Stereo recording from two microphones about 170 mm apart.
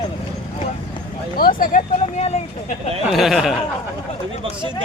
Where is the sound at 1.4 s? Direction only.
55° left (ahead or behind); by 2.7 s 40° left (ahead or behind).